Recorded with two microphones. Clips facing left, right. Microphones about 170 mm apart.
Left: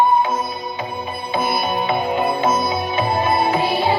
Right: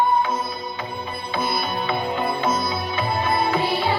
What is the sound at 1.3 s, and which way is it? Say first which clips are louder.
Music: left 5 dB; 20° left (ahead or behind).